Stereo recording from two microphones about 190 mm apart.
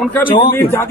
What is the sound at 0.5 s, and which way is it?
Speech, 10° left (ahead or behind).